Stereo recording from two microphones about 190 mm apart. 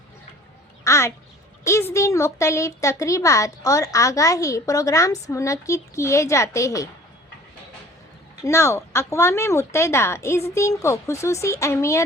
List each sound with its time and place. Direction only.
0.9 s a sound: 15° left (ahead or behind)
1.6 s speech: 15° left (ahead or behind)
8.4 s speech: 15° left (ahead or behind)